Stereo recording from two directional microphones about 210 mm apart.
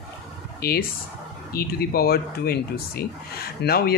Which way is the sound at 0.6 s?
45° left (ahead or behind).